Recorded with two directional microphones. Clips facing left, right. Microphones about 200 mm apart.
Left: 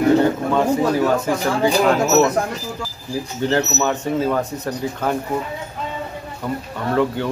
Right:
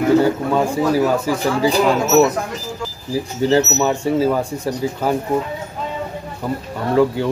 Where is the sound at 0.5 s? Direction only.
5° right (ahead or behind).